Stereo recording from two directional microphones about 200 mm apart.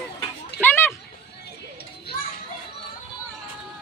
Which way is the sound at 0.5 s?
10° left (ahead or behind).